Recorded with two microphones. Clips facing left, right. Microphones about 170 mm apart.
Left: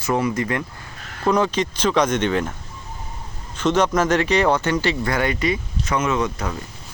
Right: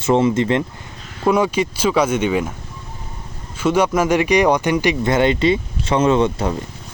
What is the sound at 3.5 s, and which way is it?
Speech, 10° right (ahead or behind).